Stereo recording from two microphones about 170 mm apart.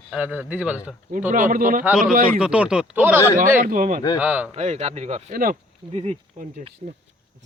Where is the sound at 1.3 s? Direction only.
50° right (ahead or behind).